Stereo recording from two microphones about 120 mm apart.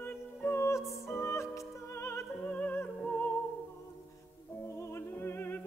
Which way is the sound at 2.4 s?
10° left (ahead or behind).